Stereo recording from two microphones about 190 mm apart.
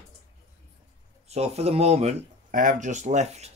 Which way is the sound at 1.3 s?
35° right (ahead or behind).